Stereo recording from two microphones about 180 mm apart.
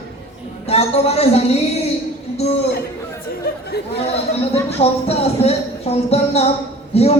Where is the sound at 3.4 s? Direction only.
55° left (ahead or behind).